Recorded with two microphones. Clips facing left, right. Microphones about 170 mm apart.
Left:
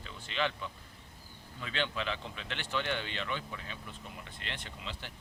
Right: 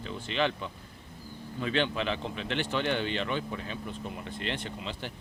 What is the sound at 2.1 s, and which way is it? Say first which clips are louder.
Speech: right 7 dB; 65° right (ahead or behind).